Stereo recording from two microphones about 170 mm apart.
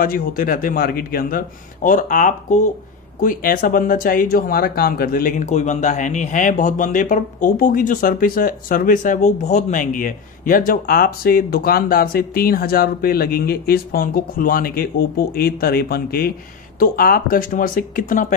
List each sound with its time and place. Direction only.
0.0 s speech: 55° left (ahead or behind)